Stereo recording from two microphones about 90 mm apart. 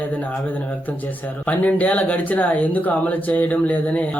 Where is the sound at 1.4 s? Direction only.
20° left (ahead or behind).